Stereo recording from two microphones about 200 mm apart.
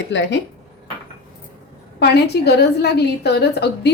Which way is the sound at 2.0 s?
55° left (ahead or behind).